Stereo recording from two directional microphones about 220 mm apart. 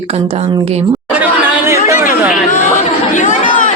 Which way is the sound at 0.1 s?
30° right (ahead or behind).